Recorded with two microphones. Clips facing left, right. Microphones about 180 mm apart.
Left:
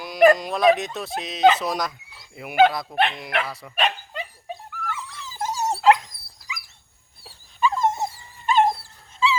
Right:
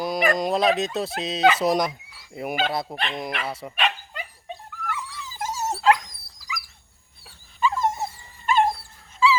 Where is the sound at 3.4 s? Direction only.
25° right (ahead or behind).